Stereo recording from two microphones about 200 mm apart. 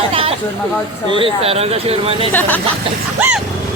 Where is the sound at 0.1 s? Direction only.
30° right (ahead or behind).